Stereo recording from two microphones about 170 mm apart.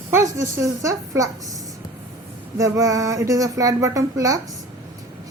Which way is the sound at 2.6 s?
20° right (ahead or behind).